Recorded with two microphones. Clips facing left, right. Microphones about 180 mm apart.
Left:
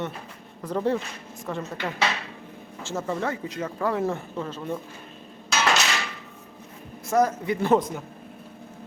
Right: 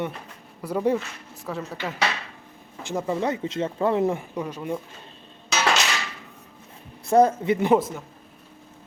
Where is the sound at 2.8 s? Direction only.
15° right (ahead or behind).